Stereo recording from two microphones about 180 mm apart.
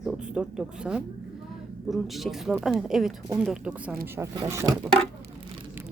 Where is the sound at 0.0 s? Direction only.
5° right (ahead or behind).